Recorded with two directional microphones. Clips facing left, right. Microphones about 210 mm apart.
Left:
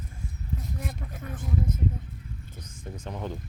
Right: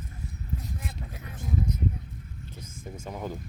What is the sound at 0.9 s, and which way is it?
Vehicle, 50° left (ahead or behind).